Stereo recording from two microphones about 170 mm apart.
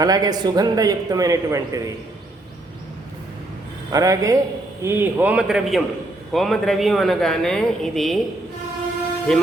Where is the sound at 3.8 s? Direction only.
20° right (ahead or behind); by 8.2 s centre (ahead or behind).